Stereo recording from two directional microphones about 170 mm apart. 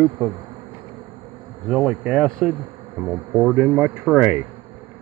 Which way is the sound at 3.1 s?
10° right (ahead or behind).